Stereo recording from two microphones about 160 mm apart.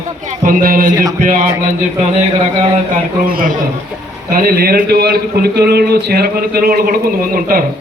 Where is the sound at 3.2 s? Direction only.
65° right (ahead or behind).